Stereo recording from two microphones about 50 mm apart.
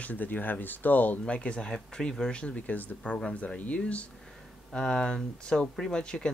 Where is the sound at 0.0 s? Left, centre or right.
Left.